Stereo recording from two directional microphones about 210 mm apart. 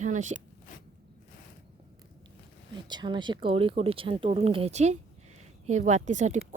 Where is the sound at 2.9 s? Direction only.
20° right (ahead or behind).